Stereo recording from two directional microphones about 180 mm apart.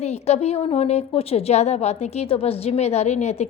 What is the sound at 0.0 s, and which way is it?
A woman's voice, 35° left (ahead or behind).